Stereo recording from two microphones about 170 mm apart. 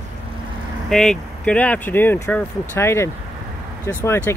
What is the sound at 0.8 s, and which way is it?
Speech, centre (ahead or behind).